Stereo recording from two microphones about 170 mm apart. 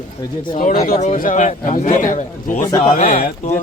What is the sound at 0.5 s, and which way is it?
A man's voice, 50° left (ahead or behind).